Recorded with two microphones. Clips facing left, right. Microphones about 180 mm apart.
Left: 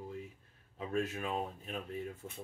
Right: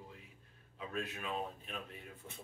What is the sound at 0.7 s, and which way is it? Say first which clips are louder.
Speech: left 6 dB; 45° left (ahead or behind).